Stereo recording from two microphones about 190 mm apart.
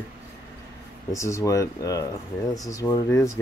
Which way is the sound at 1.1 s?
15° left (ahead or behind).